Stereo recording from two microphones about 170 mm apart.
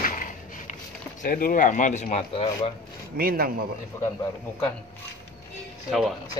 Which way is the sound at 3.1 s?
60° right (ahead or behind).